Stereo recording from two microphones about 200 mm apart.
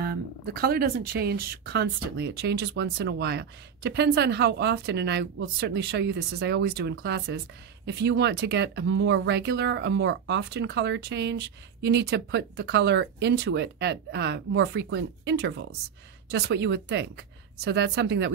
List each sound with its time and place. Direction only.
0.0 s speech: 50° right (ahead or behind)